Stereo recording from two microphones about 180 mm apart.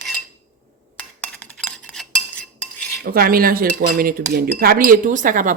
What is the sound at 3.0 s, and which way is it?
Cutlery, 55° right (ahead or behind).